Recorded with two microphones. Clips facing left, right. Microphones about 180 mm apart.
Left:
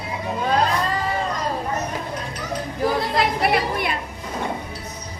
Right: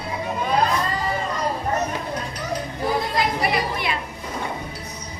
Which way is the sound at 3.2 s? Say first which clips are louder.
Left 2 dB; 60° left (ahead or behind).